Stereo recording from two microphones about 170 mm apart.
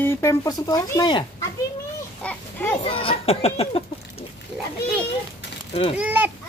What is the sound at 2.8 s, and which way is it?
Speech, 35° left (ahead or behind).